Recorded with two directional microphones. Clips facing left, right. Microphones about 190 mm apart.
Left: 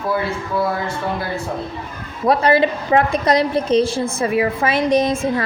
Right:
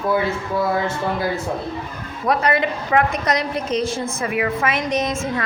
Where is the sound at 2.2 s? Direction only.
30° left (ahead or behind).